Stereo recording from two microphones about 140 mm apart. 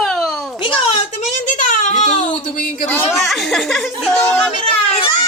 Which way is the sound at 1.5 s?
65° left (ahead or behind).